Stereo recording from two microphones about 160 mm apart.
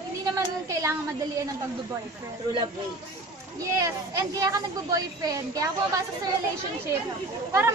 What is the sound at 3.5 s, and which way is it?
A woman's voice, 20° right (ahead or behind).